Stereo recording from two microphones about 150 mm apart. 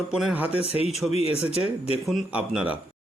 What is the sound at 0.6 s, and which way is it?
Speech, 45° left (ahead or behind).